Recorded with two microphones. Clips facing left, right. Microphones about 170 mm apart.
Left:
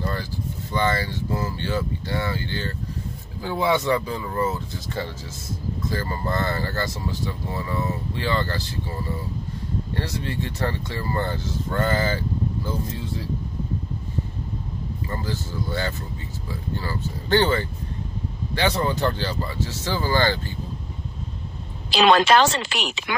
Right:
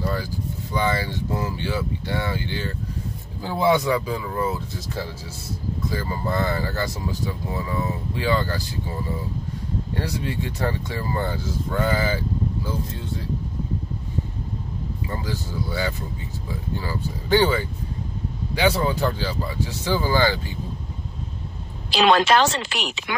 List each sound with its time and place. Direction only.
0.0 s speech: 10° right (ahead or behind)
3.7 s speech: 10° right (ahead or behind)
9.9 s speech: 15° right (ahead or behind)
12.6 s speech: centre (ahead or behind)
15.0 s speech: 15° right (ahead or behind)
21.9 s a woman's voice: 90° left